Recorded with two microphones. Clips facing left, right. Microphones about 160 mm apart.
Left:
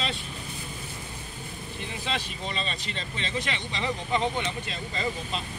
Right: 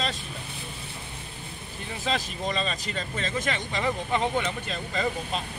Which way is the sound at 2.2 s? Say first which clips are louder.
Right 4 dB; 40° right (ahead or behind).